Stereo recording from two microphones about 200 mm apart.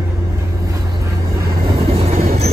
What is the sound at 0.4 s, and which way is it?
Vehicle, 15° right (ahead or behind).